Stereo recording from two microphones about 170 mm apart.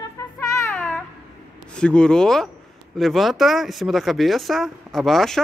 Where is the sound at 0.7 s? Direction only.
5° left (ahead or behind).